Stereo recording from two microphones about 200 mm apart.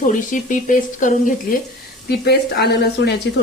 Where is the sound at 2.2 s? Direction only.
55° left (ahead or behind).